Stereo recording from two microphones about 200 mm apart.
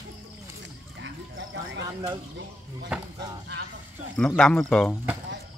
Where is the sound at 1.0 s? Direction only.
70° right (ahead or behind).